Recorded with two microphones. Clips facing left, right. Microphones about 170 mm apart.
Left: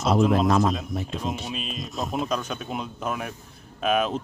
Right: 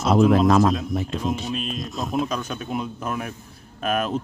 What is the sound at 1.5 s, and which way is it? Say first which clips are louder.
Speech: right 4 dB; centre (ahead or behind).